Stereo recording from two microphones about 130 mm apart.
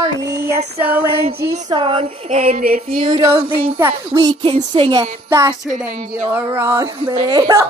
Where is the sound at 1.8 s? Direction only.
45° right (ahead or behind).